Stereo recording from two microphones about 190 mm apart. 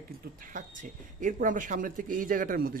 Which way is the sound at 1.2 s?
45° right (ahead or behind).